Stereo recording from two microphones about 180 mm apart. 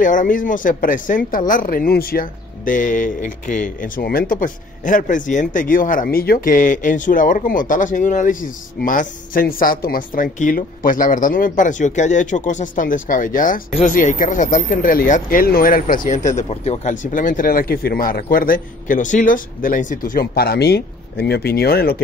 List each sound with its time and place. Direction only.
0.0 s speech: 45° left (ahead or behind)